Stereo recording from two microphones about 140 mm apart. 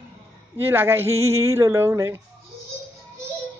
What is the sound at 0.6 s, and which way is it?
Speech, 15° right (ahead or behind).